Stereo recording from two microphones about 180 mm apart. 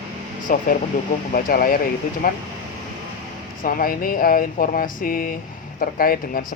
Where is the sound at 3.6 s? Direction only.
50° left (ahead or behind).